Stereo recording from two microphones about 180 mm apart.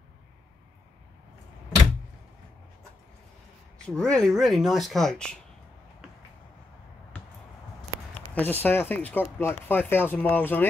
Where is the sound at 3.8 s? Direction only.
5° left (ahead or behind).